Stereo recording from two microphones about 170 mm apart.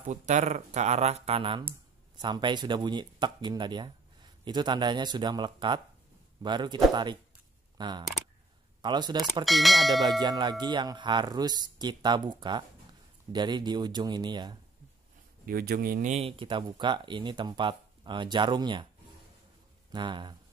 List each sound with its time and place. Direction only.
0.0 s speech: 45° right (ahead or behind); by 7.2 s 25° right (ahead or behind)
7.7 s a sound: 25° right (ahead or behind)
8.8 s speech: 25° right (ahead or behind)
9.4 s speech: centre (ahead or behind)
10.2 s speech: 25° right (ahead or behind)
15.4 s speech: 60° right (ahead or behind)
16.1 s speech: 35° right (ahead or behind)
19.9 s speech: 25° right (ahead or behind)